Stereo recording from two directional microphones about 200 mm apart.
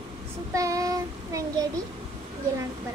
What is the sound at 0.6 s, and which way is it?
Child singing, 15° right (ahead or behind).